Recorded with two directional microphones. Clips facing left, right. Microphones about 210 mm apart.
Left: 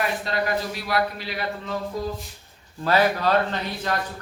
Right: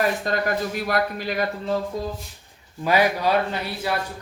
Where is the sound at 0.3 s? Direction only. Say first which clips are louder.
Right 2 dB; 50° right (ahead or behind).